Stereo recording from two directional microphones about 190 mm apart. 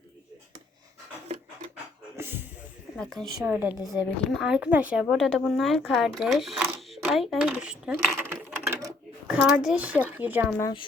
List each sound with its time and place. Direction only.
2.1 s a sound: 10° right (ahead or behind)
3.3 s speech: 10° right (ahead or behind)
3.8 s a woman's voice: centre (ahead or behind)
6.9 s coin: centre (ahead or behind)
10.6 s a woman's voice: 20° left (ahead or behind)